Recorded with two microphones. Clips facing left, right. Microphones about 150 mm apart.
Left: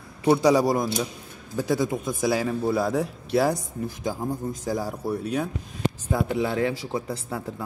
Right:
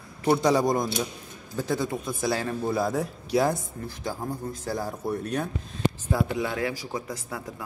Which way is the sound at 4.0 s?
15° left (ahead or behind).